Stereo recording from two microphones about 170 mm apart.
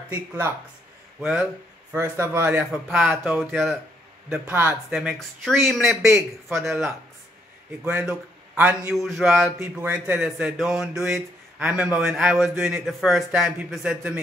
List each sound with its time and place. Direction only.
0.1 s speech: 15° right (ahead or behind)
1.2 s speech: centre (ahead or behind)
2.0 s a man's voice: 15° right (ahead or behind)
7.8 s a man's voice: 5° right (ahead or behind)